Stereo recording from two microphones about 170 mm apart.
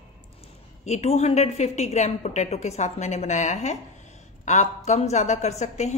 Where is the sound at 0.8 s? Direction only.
40° left (ahead or behind).